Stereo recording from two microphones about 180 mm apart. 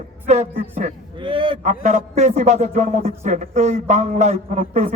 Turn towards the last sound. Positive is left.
turn(degrees=-40)  # may be behind; listen again after turning